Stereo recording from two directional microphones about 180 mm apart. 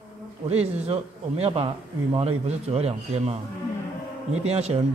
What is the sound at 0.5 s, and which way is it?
A man's voice, 35° right (ahead or behind).